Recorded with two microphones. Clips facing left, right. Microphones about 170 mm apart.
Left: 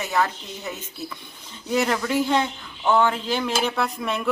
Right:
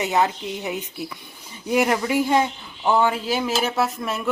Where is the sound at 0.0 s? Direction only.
20° right (ahead or behind).